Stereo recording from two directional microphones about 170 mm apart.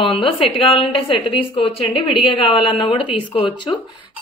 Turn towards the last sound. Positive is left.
turn(degrees=30)  # may be behind; listen again after turning